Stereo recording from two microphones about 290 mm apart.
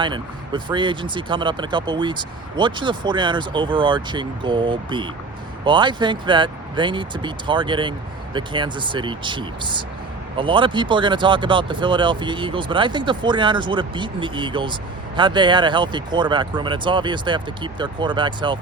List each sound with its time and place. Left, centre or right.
0.0 s speech: centre